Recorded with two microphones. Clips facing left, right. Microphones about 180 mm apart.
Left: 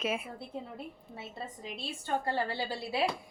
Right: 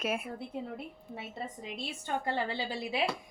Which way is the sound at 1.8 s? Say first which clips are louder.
Left 2 dB; 15° right (ahead or behind).